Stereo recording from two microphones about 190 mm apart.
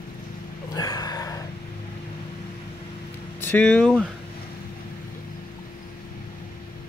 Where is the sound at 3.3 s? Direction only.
10° left (ahead or behind).